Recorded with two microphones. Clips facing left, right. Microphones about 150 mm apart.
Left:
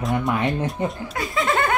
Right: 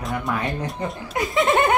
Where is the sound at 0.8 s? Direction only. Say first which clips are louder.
Left 3 dB; 25° left (ahead or behind).